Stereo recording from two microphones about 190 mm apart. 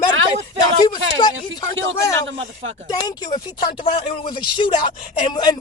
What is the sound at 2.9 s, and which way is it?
Speech, 20° left (ahead or behind).